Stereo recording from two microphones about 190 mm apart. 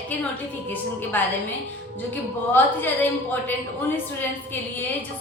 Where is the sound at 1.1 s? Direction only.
10° left (ahead or behind).